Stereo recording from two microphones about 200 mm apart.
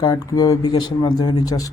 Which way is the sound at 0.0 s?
20° left (ahead or behind).